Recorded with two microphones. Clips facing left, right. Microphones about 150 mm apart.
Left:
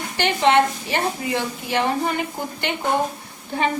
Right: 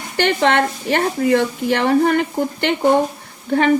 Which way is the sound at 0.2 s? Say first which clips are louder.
Right 1 dB; 60° right (ahead or behind).